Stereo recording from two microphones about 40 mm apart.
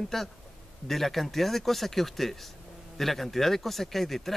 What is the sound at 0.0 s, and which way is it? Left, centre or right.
A man's voice, centre.